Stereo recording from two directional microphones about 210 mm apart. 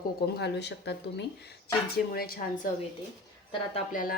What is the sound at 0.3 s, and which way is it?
Speech, 55° left (ahead or behind).